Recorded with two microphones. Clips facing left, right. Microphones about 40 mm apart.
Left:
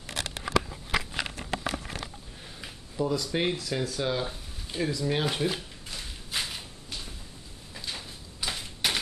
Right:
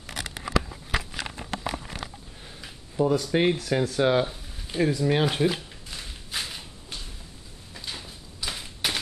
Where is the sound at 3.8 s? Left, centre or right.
Right.